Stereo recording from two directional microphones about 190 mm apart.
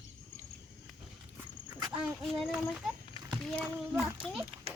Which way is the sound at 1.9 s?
5° right (ahead or behind).